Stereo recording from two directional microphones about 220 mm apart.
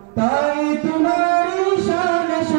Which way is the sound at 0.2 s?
15° right (ahead or behind).